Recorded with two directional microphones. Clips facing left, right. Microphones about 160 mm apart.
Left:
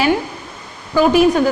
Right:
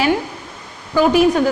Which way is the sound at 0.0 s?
10° left (ahead or behind).